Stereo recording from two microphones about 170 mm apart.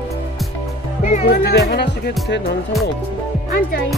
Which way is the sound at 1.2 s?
75° left (ahead or behind).